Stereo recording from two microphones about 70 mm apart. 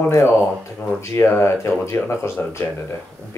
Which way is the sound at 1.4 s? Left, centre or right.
Left.